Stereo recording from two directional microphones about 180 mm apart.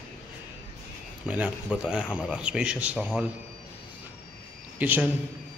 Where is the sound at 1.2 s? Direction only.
5° right (ahead or behind).